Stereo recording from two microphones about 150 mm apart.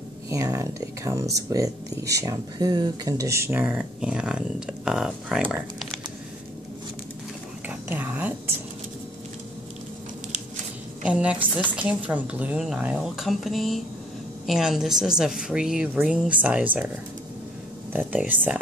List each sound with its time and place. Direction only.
0.3 s speech: 20° right (ahead or behind); by 5.9 s 5° right (ahead or behind)
7.6 s speech: 10° right (ahead or behind)
11.1 s a woman's voice: 10° right (ahead or behind)